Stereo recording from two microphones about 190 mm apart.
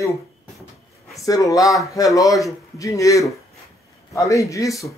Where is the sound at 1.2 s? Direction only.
20° left (ahead or behind).